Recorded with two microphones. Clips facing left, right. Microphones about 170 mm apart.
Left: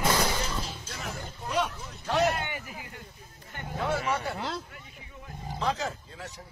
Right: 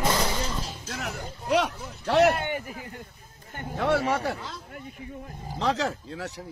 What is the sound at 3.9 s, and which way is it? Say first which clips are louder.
Speech: right 4 dB; 35° right (ahead or behind).